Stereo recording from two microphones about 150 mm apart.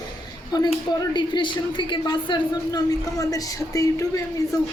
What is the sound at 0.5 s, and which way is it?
A woman's voice, 25° left (ahead or behind).